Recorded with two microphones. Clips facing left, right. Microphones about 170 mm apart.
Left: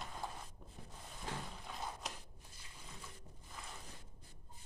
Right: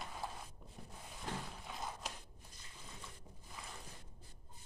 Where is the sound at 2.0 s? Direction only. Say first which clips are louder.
Even; centre (ahead or behind).